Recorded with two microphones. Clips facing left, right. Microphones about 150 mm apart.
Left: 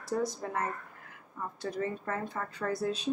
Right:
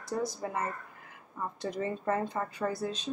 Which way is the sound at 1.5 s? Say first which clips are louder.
Even; 20° right (ahead or behind).